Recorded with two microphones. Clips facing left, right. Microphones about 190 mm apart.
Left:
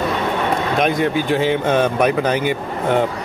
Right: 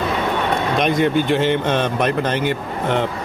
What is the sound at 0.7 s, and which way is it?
Speech, centre (ahead or behind).